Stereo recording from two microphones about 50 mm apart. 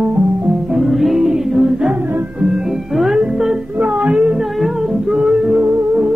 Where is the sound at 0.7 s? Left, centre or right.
Centre.